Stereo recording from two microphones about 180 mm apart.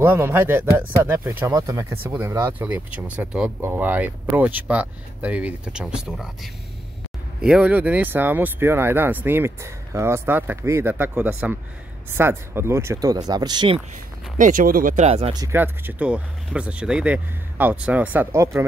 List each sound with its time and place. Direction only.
0.0 s speech: 10° right (ahead or behind)
14.4 s speech: 50° right (ahead or behind)
15.3 s speech: 15° right (ahead or behind)